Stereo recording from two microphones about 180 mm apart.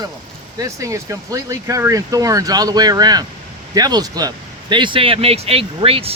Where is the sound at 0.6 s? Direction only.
15° right (ahead or behind).